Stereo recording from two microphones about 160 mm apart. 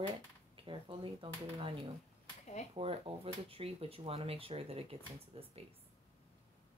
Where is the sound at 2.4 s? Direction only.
45° left (ahead or behind).